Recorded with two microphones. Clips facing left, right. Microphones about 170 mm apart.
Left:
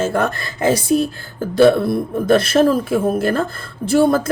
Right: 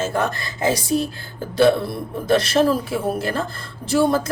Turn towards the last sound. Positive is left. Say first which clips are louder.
# left 4 dB
turn(degrees=55)  # may be behind; listen again after turning